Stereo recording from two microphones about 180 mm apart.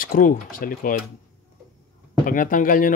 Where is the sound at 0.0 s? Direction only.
50° left (ahead or behind).